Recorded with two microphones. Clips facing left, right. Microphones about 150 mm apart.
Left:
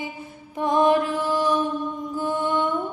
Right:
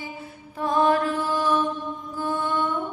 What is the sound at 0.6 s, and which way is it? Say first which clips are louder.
Mantra: left 2 dB; 15° left (ahead or behind).